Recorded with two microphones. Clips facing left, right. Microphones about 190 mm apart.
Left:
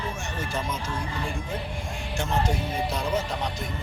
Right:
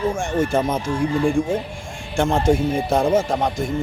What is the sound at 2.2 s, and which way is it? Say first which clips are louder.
Speech: right 10 dB; 50° right (ahead or behind).